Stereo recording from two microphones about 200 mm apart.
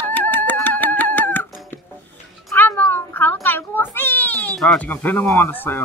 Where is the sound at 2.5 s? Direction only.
10° left (ahead or behind).